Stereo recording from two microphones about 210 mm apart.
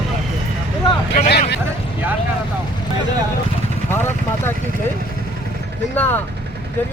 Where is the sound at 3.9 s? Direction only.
10° left (ahead or behind).